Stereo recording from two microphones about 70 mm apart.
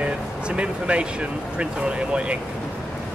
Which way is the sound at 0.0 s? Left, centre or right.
Centre.